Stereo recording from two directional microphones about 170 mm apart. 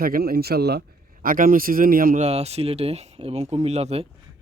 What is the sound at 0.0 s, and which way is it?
Speech, 60° right (ahead or behind).